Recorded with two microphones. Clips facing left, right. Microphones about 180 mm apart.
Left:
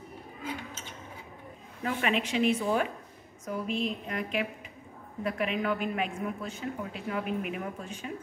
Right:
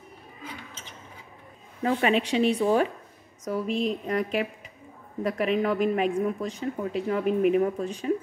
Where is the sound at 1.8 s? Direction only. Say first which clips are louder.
Right 6 dB; 35° right (ahead or behind).